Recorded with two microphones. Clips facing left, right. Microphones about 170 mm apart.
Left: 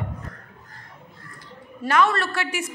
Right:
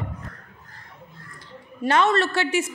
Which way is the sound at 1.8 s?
25° right (ahead or behind).